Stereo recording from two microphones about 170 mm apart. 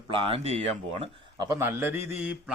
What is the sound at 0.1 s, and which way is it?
Speech, 30° right (ahead or behind).